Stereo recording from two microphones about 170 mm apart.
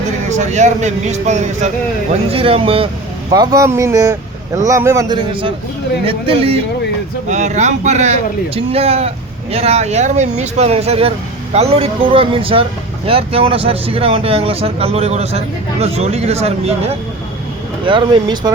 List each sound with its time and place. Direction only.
0.3 s speech: 45° right (ahead or behind)
17.8 s speech: 25° right (ahead or behind)